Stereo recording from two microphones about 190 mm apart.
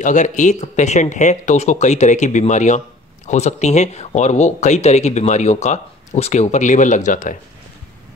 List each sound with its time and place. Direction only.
0.0 s speech: 40° left (ahead or behind)